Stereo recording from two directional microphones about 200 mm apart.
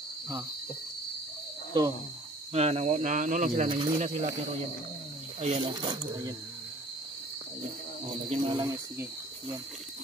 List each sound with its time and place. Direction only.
1.7 s speech: 20° right (ahead or behind)
2.5 s speech: 30° right (ahead or behind)
3.6 s speech: 20° right (ahead or behind)
5.4 s speech: 25° right (ahead or behind)
8.3 s speech: 25° right (ahead or behind)